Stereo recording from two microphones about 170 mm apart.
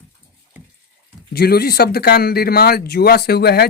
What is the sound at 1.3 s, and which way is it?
Speech, 65° left (ahead or behind).